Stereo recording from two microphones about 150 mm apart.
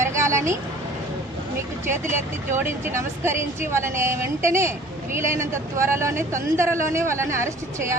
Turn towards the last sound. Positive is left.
turn(degrees=-20)  # may be behind; listen again after turning